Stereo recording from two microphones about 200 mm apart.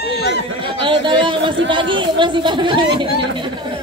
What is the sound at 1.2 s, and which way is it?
Speech, 25° right (ahead or behind).